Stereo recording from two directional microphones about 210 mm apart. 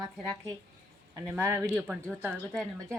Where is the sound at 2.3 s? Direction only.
5° left (ahead or behind).